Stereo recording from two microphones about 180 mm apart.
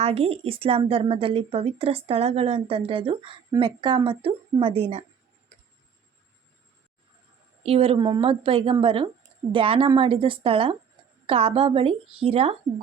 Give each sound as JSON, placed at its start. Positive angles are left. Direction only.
{"t": 0.0, "sound": "a woman's voice", "side_deg": -35}
{"t": 7.6, "sound": "a woman's voice", "side_deg": -35}